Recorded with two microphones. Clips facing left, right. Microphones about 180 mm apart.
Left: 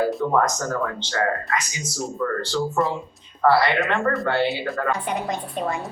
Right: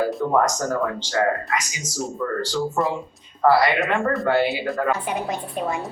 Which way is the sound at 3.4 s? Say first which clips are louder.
Right 1 dB; 10° right (ahead or behind).